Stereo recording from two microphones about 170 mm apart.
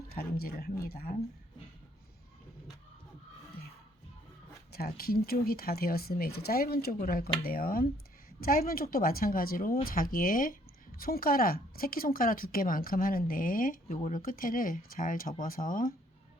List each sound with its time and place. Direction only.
0.1 s speech: 65° left (ahead or behind)
4.7 s speech: 65° left (ahead or behind)